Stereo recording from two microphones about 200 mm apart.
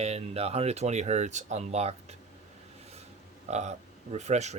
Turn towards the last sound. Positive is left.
turn(degrees=-35)  # may be behind; listen again after turning